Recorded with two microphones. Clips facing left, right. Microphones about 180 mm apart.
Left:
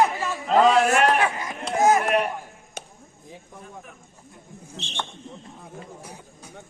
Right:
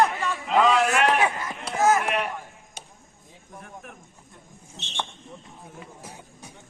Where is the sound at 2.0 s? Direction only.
40° left (ahead or behind).